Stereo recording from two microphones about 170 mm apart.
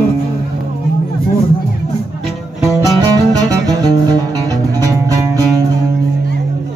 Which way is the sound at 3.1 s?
20° right (ahead or behind).